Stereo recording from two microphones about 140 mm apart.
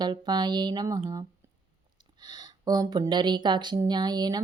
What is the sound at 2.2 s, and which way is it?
Speech, 30° right (ahead or behind).